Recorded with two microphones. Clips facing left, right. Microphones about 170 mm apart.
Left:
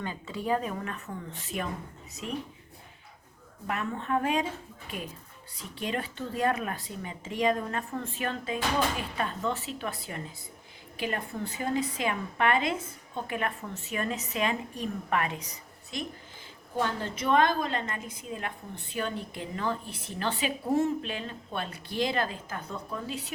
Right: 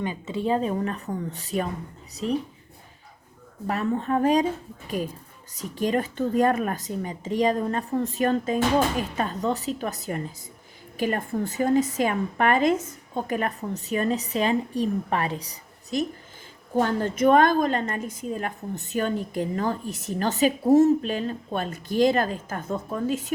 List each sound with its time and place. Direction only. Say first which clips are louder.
0.0 s a woman's voice: right 7 dB; 20° right (ahead or behind); by 2.4 s 35° right (ahead or behind)
3.7 s a woman's voice: right 6 dB; 35° right (ahead or behind)
5.5 s a woman's voice: right 9 dB; 45° right (ahead or behind)
16.7 s a woman's voice: right 7 dB; 50° right (ahead or behind)